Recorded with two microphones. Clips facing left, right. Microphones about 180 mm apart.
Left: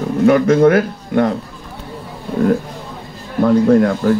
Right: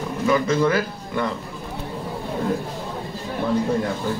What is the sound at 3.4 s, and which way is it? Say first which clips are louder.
Speech: left 11 dB; 70° left (ahead or behind).